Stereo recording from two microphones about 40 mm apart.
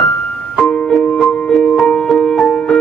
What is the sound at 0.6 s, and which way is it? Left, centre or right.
Music, left.